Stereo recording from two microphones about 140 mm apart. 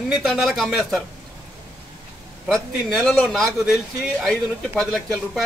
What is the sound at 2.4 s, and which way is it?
A man's voice, 5° left (ahead or behind).